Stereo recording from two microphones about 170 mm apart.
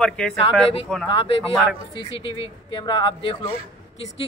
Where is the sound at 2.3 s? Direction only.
25° left (ahead or behind).